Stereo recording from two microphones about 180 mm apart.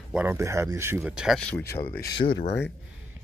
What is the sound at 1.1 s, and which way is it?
Speech, centre (ahead or behind).